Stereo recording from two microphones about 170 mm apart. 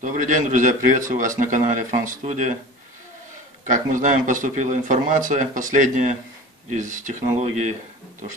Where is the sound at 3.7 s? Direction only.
50° right (ahead or behind).